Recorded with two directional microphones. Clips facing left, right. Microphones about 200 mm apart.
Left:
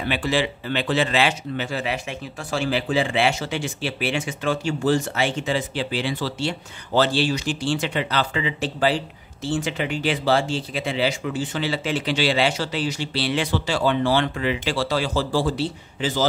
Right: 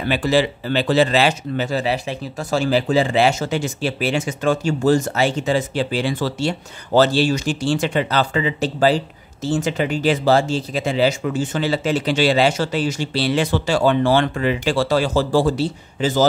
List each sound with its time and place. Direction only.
0.1 s speech: 40° right (ahead or behind)